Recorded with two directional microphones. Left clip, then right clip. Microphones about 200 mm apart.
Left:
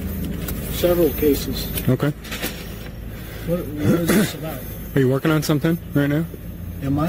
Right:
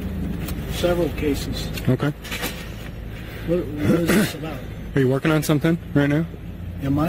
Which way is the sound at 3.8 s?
5° left (ahead or behind).